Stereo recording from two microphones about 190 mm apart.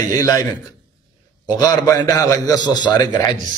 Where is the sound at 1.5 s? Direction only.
20° left (ahead or behind).